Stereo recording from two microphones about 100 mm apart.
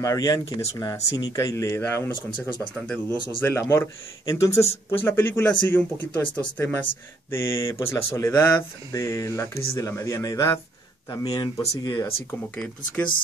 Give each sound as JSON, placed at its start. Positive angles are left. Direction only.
{"t": 0.0, "sound": "speech", "side_deg": 35}
{"t": 2.7, "sound": "speech", "side_deg": 10}
{"t": 3.3, "sound": "speech", "side_deg": 25}
{"t": 12.3, "sound": "speech", "side_deg": 15}